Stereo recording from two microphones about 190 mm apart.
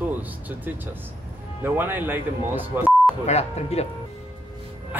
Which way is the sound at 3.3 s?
35° left (ahead or behind).